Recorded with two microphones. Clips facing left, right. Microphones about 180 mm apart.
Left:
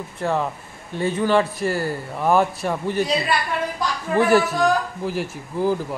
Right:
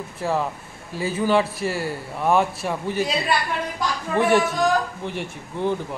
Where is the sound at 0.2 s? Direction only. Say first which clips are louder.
Left 1 dB; centre (ahead or behind).